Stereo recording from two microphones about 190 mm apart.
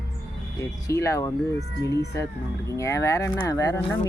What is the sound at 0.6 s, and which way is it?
Speech, 15° left (ahead or behind).